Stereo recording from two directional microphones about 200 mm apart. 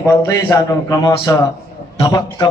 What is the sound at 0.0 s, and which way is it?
A man's voice, 15° left (ahead or behind).